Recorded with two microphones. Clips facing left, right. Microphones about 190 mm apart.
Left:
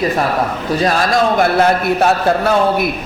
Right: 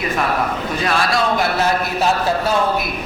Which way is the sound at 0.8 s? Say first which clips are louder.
Left 5 dB; 45° left (ahead or behind).